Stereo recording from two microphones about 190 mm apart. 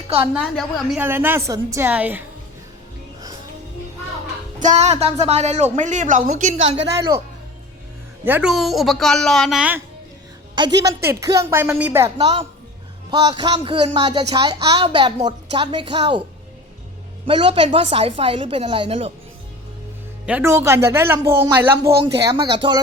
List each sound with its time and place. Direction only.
0.3 s a woman's voice: centre (ahead or behind)
4.6 s a woman's voice: 35° right (ahead or behind)
8.2 s speech: 10° right (ahead or behind)
10.5 s a woman's voice: 20° right (ahead or behind)
12.1 s a woman's voice: 30° right (ahead or behind)
17.2 s a woman's voice: 30° right (ahead or behind)
20.2 s a woman's voice: 10° right (ahead or behind)
21.8 s speech: 55° right (ahead or behind)
22.2 s a woman's voice: 20° right (ahead or behind)